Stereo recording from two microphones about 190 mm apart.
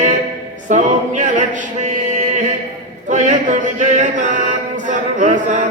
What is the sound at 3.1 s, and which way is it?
Chant, 40° right (ahead or behind).